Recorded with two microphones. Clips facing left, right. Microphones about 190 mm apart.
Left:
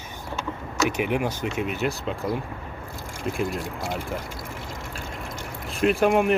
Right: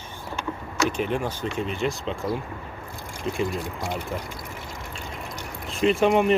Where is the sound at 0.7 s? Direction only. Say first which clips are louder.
Left 1 dB; 10° left (ahead or behind).